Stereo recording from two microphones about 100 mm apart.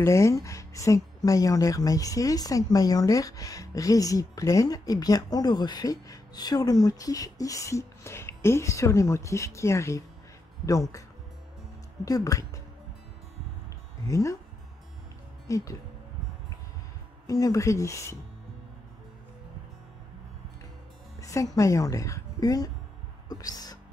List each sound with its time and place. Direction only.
0.0 s speech: 30° left (ahead or behind)
14.0 s speech: 30° left (ahead or behind)
15.4 s speech: 35° left (ahead or behind)
17.3 s speech: 35° left (ahead or behind)
21.2 s speech: 30° left (ahead or behind)